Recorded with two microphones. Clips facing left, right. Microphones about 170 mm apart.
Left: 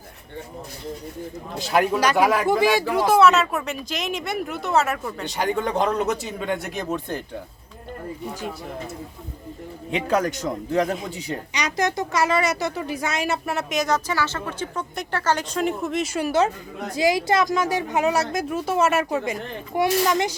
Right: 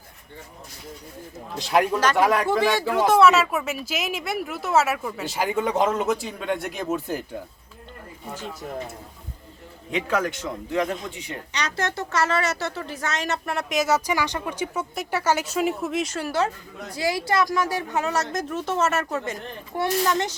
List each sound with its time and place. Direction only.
1.5 s a woman's voice: centre (ahead or behind)
3.1 s a woman's voice: centre (ahead or behind)
9.9 s a man's voice: 40° left (ahead or behind)
11.5 s a woman's voice: 15° left (ahead or behind)
16.1 s speech: 20° left (ahead or behind)